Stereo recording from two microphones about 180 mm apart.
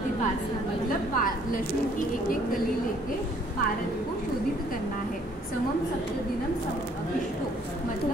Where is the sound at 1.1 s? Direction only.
50° left (ahead or behind).